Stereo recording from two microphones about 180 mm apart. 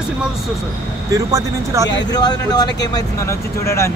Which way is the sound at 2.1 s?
20° left (ahead or behind).